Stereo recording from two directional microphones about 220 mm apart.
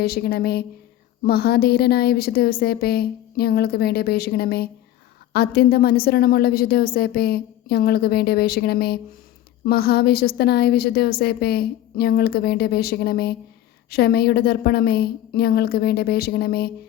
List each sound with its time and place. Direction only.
0.0 s a woman's voice: 45° left (ahead or behind)